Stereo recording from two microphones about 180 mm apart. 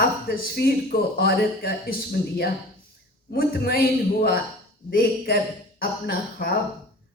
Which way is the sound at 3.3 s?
60° left (ahead or behind).